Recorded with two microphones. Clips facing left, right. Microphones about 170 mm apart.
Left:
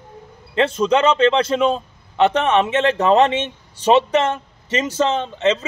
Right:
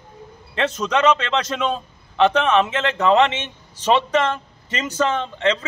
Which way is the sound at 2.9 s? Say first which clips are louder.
Left 1 dB; 40° left (ahead or behind).